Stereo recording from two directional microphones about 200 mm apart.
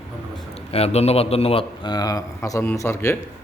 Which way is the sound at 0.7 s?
30° left (ahead or behind).